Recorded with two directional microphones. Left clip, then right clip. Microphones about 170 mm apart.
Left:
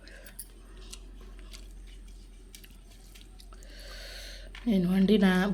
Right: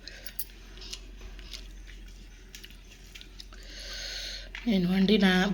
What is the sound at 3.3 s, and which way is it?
Speech, 10° left (ahead or behind).